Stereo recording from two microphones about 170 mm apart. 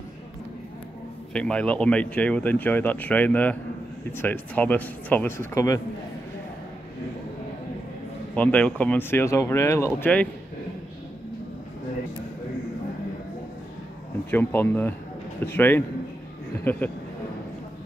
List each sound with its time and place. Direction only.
1.3 s speech: 5° left (ahead or behind)
8.4 s speech: 10° left (ahead or behind)
14.3 s speech: 10° left (ahead or behind)